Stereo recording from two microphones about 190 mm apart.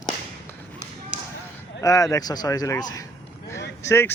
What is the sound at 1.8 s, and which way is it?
Speech, 15° left (ahead or behind).